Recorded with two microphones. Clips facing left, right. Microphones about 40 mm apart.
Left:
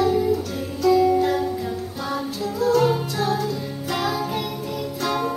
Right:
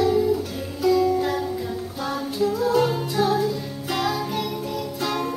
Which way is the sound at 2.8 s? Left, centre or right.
Centre.